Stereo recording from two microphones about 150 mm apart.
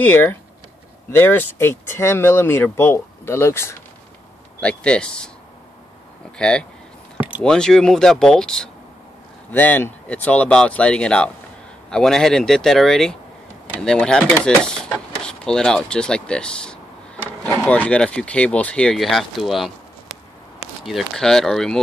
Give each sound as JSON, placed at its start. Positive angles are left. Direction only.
{"t": 0.0, "sound": "speech", "side_deg": 10}
{"t": 6.3, "sound": "speech", "side_deg": 5}
{"t": 20.1, "sound": "a sound", "side_deg": 45}
{"t": 20.8, "sound": "speech", "side_deg": 0}